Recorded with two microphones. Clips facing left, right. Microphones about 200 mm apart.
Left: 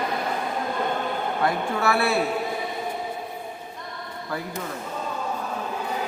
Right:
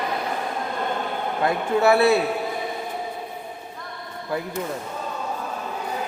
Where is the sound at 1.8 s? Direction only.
20° right (ahead or behind).